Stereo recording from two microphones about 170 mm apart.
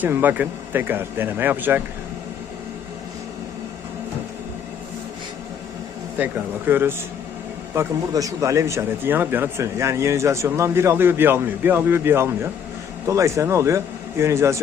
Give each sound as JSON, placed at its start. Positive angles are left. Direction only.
{"t": 0.0, "sound": "speech", "side_deg": -10}
{"t": 6.1, "sound": "speech", "side_deg": -10}